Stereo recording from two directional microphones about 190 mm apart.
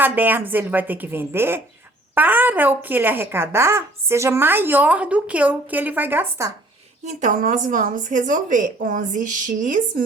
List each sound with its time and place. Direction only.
0.0 s a woman's voice: 10° right (ahead or behind)
7.0 s a woman's voice: 40° right (ahead or behind)